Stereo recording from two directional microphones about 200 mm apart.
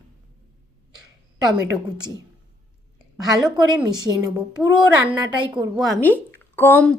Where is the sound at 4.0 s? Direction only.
20° right (ahead or behind).